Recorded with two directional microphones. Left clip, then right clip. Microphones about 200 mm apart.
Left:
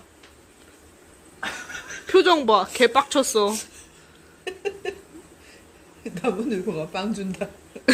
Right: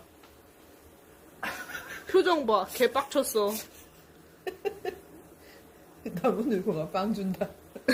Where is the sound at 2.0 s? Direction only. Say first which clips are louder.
Left 7 dB; 15° left (ahead or behind).